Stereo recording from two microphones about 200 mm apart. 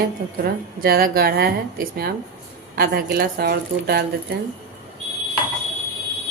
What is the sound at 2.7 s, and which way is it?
A woman's voice, 50° right (ahead or behind).